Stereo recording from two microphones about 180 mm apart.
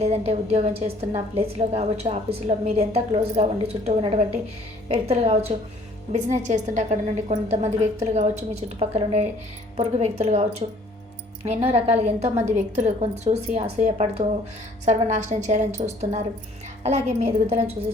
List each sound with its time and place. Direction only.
0.0 s a woman's voice: 35° right (ahead or behind)